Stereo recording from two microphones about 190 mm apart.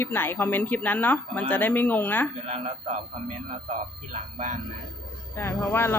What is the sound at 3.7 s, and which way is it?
Speech, 40° right (ahead or behind).